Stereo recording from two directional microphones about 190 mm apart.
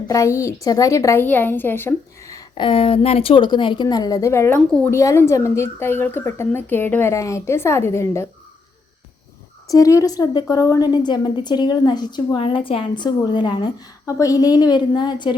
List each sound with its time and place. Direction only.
0.1 s a woman's voice: 15° left (ahead or behind)
9.6 s a woman's voice: 20° left (ahead or behind)